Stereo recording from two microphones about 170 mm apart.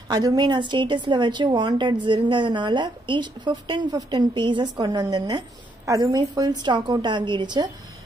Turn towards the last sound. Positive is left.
turn(degrees=-25)  # may be behind; listen again after turning